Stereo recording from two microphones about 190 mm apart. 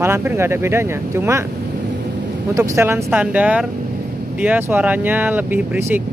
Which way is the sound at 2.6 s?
15° right (ahead or behind).